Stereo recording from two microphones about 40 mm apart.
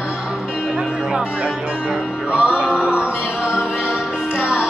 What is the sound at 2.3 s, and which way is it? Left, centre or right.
Music, right.